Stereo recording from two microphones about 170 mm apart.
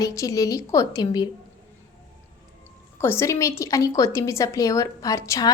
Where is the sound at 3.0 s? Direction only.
15° left (ahead or behind).